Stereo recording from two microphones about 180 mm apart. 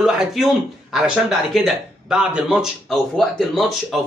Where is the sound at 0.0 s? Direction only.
Centre (ahead or behind).